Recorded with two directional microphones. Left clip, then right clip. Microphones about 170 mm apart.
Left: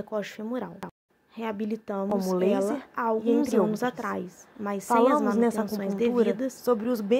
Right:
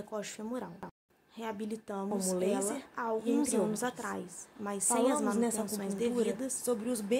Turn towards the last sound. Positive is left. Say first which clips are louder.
# left 8 dB
turn(degrees=35)  # may be behind; listen again after turning